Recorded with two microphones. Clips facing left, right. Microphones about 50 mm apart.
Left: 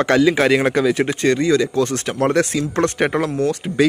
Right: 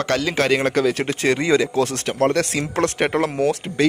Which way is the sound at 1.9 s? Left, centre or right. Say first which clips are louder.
Left 2 dB; centre.